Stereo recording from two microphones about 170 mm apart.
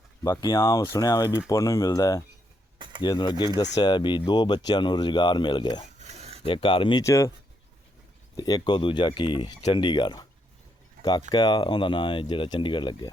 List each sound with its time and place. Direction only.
0.2 s speech: 20° left (ahead or behind)
2.7 s a sound: 30° right (ahead or behind)
3.0 s speech: 25° left (ahead or behind)
6.0 s a sound: 40° right (ahead or behind)
6.4 s speech: 30° left (ahead or behind)
7.0 s speech: 15° left (ahead or behind)
8.4 s speech: 25° left (ahead or behind)
11.3 s speech: 25° left (ahead or behind)